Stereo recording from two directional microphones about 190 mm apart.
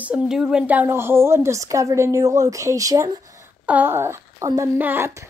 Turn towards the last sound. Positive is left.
turn(degrees=-15)  # may be behind; listen again after turning